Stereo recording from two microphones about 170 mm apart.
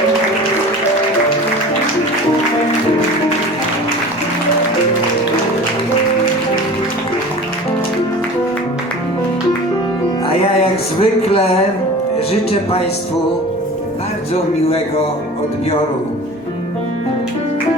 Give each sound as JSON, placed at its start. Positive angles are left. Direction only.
{"t": 10.2, "sound": "music", "side_deg": 35}
{"t": 12.3, "sound": "speech", "side_deg": 35}